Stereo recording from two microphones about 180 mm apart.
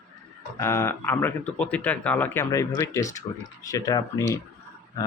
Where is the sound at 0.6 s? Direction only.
15° left (ahead or behind).